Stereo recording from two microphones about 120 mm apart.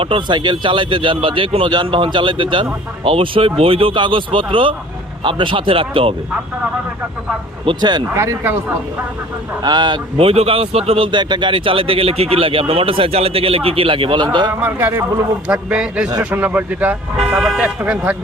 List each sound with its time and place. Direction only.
0.0 s speech: 45° right (ahead or behind)
7.6 s speech: 40° right (ahead or behind)
8.1 s speech: 20° right (ahead or behind)
9.6 s speech: 35° right (ahead or behind)
10.2 s speech: 55° right (ahead or behind)
14.6 s speech: 20° right (ahead or behind)
15.4 s speech: 5° right (ahead or behind)